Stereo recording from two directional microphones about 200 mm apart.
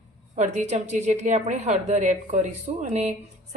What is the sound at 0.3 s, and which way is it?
A woman's voice, 35° right (ahead or behind).